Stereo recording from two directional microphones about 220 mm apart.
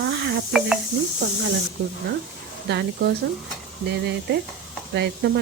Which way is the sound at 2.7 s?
50° right (ahead or behind).